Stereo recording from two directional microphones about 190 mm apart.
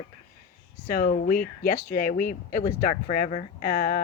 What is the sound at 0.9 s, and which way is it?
Speech, 45° left (ahead or behind).